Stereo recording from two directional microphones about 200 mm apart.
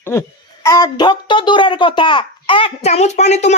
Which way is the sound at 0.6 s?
20° left (ahead or behind).